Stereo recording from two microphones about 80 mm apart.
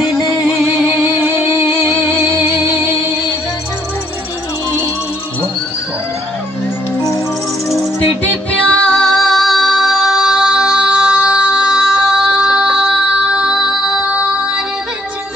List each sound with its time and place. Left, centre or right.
1.2 s music: right
8.2 s music: centre